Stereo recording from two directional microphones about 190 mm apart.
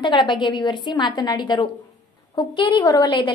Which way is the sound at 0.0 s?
25° left (ahead or behind).